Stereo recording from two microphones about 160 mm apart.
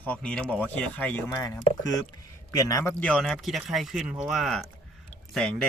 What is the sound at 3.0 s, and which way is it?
Speech, 5° left (ahead or behind).